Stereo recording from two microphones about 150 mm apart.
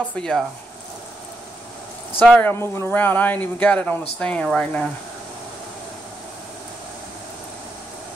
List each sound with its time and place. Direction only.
0.1 s speech: 5° left (ahead or behind)
2.1 s speech: 10° left (ahead or behind)